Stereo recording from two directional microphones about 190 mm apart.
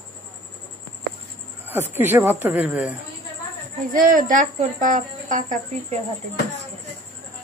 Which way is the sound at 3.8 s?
45° right (ahead or behind).